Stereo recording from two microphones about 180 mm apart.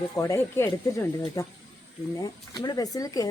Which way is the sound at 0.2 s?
15° left (ahead or behind).